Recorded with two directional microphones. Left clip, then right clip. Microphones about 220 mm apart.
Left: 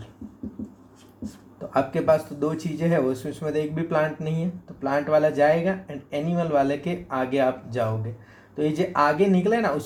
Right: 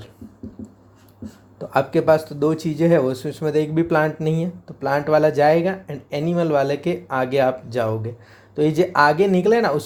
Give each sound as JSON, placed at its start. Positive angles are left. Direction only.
{"t": 1.5, "sound": "speech", "side_deg": -50}